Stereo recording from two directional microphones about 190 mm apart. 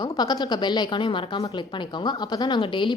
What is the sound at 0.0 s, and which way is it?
A woman's voice, 20° left (ahead or behind).